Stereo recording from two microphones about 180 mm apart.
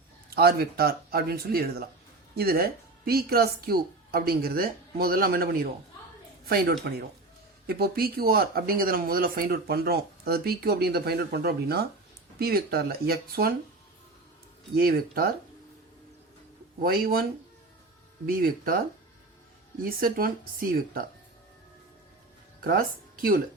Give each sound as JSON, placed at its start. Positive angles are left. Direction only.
{"t": 0.3, "sound": "speech", "side_deg": -60}
{"t": 14.8, "sound": "speech", "side_deg": -55}
{"t": 16.8, "sound": "speech", "side_deg": -55}
{"t": 18.3, "sound": "a woman's voice", "side_deg": -55}
{"t": 19.8, "sound": "a woman's voice", "side_deg": -55}
{"t": 22.6, "sound": "speech", "side_deg": -55}